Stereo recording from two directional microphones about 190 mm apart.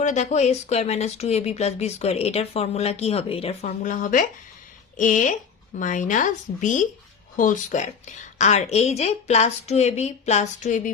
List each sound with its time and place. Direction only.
0.0 s speech: 40° left (ahead or behind)